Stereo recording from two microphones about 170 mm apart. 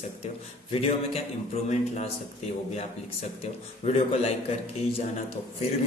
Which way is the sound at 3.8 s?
40° left (ahead or behind).